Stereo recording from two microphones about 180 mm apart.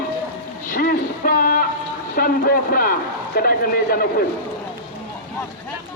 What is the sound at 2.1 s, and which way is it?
A man's voice, 55° left (ahead or behind).